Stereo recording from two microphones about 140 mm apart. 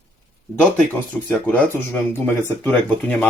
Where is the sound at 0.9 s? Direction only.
10° left (ahead or behind).